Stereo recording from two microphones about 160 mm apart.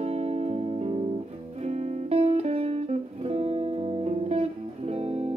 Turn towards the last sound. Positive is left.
turn(degrees=-40)  # may be behind; listen again after turning